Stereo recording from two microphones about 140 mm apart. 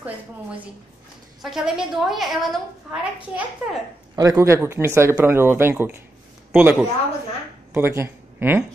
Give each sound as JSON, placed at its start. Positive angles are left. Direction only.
{"t": 1.4, "sound": "a woman's voice", "side_deg": -5}
{"t": 4.1, "sound": "speech", "side_deg": -25}